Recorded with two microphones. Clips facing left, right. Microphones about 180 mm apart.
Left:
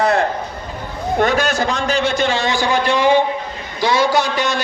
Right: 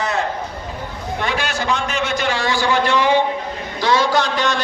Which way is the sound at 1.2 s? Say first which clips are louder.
Left 7 dB; 45° left (ahead or behind).